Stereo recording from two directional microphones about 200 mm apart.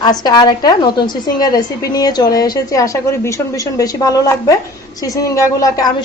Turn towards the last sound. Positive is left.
turn(degrees=20)  # may be behind; listen again after turning